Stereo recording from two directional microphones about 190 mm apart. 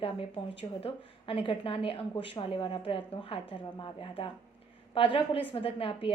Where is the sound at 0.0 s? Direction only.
30° left (ahead or behind).